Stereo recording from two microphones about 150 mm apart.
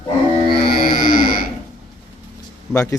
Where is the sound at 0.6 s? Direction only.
80° left.